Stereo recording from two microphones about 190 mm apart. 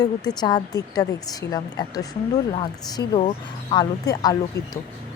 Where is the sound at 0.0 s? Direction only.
20° left (ahead or behind).